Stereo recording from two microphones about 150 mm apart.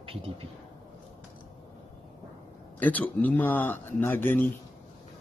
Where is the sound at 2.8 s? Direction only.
10° left (ahead or behind).